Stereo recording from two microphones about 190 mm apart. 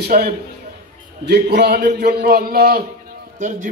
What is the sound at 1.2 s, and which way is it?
A man's voice, 60° right (ahead or behind).